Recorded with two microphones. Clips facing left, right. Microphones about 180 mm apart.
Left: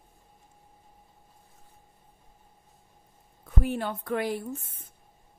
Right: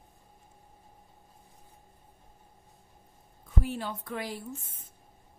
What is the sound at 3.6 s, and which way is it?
Speech, 60° left (ahead or behind).